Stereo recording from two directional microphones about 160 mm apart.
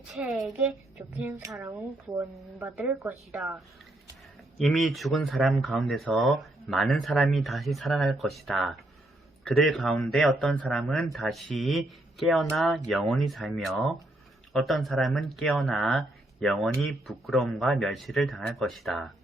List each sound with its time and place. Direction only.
0.1 s speech: centre (ahead or behind)
1.3 s a woman's voice: 15° right (ahead or behind); by 19.1 s centre (ahead or behind)